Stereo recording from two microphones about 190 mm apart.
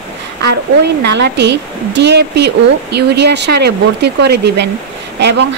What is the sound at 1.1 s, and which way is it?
A woman's voice, 65° right (ahead or behind).